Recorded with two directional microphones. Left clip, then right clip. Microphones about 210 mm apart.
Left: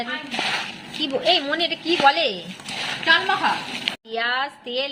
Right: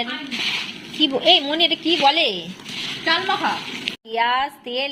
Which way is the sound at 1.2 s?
5° right (ahead or behind).